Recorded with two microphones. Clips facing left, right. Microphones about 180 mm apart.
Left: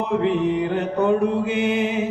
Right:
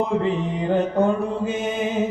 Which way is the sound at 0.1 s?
65° left (ahead or behind).